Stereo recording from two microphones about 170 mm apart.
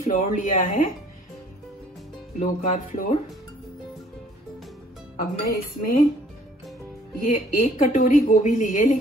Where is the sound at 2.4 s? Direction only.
50° left (ahead or behind).